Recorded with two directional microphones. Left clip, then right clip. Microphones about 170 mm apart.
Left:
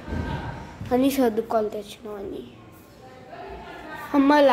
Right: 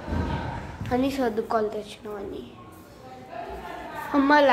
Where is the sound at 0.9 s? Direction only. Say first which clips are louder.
Left 4 dB; 45° left (ahead or behind).